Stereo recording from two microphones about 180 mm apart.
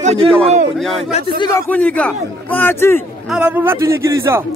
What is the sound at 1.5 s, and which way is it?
A man's voice, 10° left (ahead or behind).